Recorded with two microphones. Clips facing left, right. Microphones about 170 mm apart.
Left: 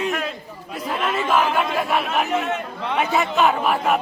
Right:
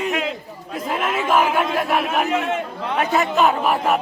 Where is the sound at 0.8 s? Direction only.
10° right (ahead or behind).